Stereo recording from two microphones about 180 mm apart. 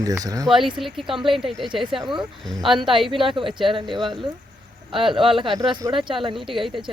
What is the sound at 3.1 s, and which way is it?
Speech, 30° right (ahead or behind).